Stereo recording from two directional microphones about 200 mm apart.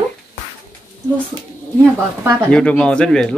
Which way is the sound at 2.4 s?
5° left (ahead or behind).